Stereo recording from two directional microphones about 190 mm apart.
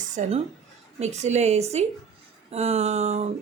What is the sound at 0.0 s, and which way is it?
Speech, 40° right (ahead or behind).